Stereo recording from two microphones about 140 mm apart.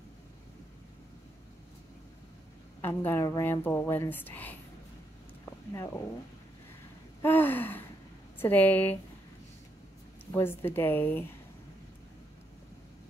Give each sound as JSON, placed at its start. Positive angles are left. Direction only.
{"t": 2.8, "sound": "a woman's voice", "side_deg": 15}
{"t": 5.4, "sound": "a sound", "side_deg": 20}
{"t": 7.2, "sound": "gasp", "side_deg": 15}
{"t": 8.4, "sound": "a woman's voice", "side_deg": 15}
{"t": 10.3, "sound": "a woman's voice", "side_deg": 15}